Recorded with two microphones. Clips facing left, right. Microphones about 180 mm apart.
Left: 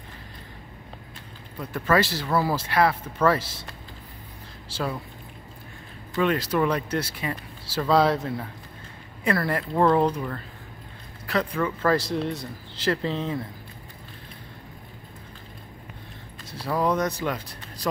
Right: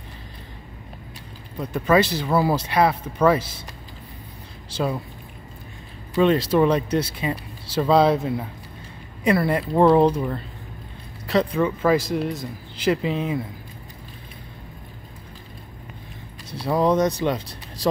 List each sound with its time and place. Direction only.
1.6 s speech: 20° right (ahead or behind)
4.6 s speech: 20° right (ahead or behind)
6.1 s speech: 25° right (ahead or behind)
9.2 s speech: 20° right (ahead or behind)
16.6 s speech: 20° right (ahead or behind)